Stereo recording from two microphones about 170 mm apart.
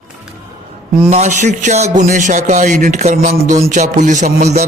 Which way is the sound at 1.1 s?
45° right (ahead or behind).